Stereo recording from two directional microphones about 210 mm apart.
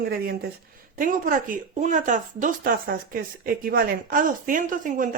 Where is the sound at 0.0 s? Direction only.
45° right (ahead or behind).